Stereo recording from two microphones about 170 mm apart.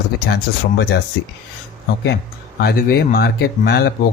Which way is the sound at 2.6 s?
65° left (ahead or behind).